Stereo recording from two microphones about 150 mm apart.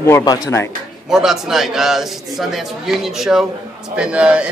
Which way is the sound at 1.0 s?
5° right (ahead or behind).